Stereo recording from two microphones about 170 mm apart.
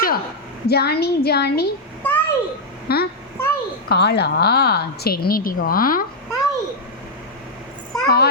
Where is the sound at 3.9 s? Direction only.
75° left (ahead or behind); by 6.1 s 55° left (ahead or behind).